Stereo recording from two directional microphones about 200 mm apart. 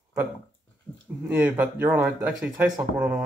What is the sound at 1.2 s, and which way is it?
Speech, 10° right (ahead or behind).